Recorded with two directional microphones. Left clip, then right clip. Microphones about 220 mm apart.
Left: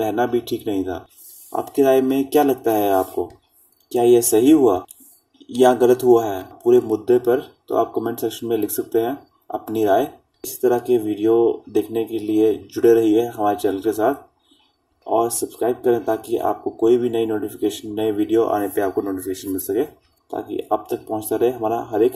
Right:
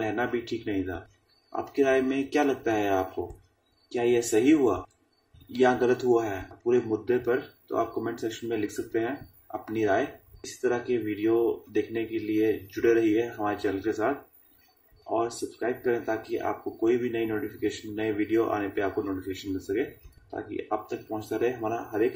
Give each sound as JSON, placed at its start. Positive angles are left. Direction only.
{"t": 0.2, "sound": "speech", "side_deg": 10}
{"t": 0.7, "sound": "speech", "side_deg": 40}
{"t": 15.0, "sound": "speech", "side_deg": 40}